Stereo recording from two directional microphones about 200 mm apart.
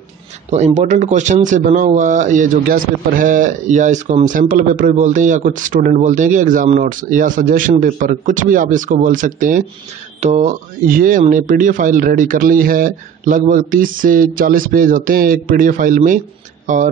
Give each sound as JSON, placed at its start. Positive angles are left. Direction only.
{"t": 0.5, "sound": "speech", "side_deg": -35}